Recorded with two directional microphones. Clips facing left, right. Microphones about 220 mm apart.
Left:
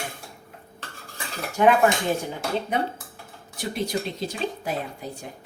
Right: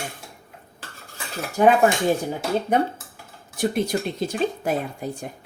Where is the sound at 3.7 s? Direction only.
50° right (ahead or behind).